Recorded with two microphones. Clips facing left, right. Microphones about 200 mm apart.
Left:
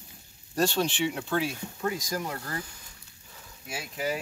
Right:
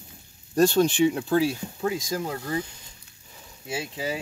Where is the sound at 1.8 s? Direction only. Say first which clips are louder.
Right 4 dB; 25° right (ahead or behind).